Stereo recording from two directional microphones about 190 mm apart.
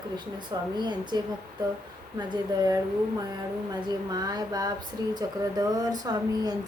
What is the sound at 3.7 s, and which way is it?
Speech, 20° right (ahead or behind).